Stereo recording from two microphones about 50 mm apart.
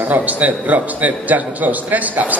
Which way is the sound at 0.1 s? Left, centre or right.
Right.